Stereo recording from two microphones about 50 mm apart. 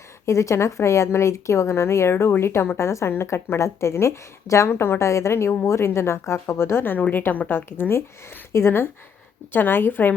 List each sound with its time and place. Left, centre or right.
0.3 s a woman's voice: left
4.7 s a woman's voice: left